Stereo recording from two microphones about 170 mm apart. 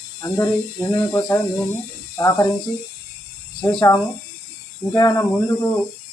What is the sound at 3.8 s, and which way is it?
Speech, 20° left (ahead or behind).